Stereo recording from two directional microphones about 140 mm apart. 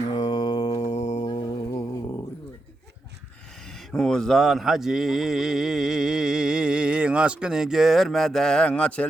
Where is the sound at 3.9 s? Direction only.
5° left (ahead or behind).